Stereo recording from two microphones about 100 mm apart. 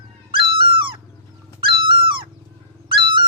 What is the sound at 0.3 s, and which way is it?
Dog, 60° right (ahead or behind).